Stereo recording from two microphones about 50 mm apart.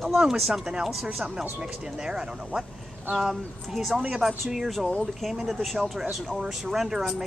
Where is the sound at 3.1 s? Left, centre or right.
Centre.